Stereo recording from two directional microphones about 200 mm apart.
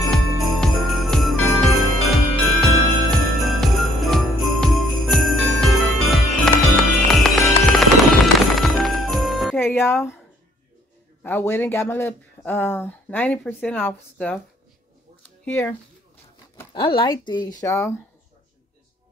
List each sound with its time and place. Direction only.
0.4 s jingle bell: centre (ahead or behind)
8.5 s music: centre (ahead or behind)
9.6 s music: 10° left (ahead or behind)
11.2 s speech: 10° left (ahead or behind)
15.4 s speech: 10° left (ahead or behind)
16.7 s speech: 25° left (ahead or behind)